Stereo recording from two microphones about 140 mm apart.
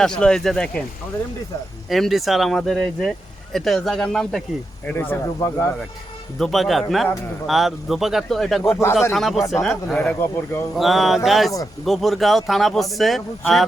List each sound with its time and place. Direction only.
0.0 s speech: 5° left (ahead or behind)
1.9 s speech: centre (ahead or behind)
4.9 s speech: 15° left (ahead or behind)
6.4 s speech: centre (ahead or behind)